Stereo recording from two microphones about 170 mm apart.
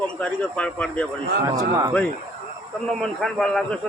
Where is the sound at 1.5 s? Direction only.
20° right (ahead or behind).